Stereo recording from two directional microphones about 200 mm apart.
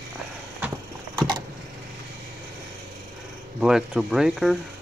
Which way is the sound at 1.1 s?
20° right (ahead or behind).